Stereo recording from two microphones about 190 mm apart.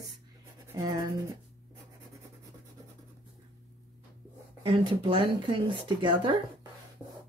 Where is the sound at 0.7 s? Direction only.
15° right (ahead or behind).